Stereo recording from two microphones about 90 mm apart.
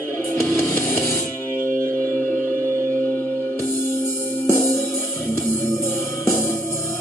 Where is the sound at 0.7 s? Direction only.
20° left (ahead or behind).